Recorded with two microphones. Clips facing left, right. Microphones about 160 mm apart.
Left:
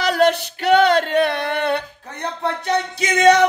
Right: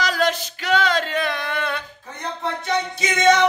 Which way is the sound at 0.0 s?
60° left (ahead or behind).